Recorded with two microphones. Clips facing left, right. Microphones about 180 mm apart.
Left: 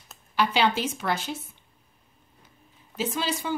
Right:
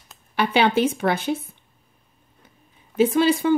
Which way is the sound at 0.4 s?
55° right (ahead or behind).